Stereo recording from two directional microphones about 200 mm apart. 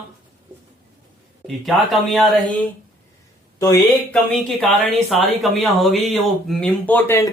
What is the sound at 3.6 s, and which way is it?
Speech, 15° left (ahead or behind).